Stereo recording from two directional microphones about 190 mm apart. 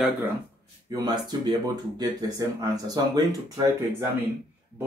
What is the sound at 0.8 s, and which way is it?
Speech, 20° right (ahead or behind).